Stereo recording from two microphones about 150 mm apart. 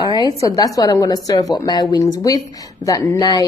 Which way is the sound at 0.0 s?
25° left (ahead or behind).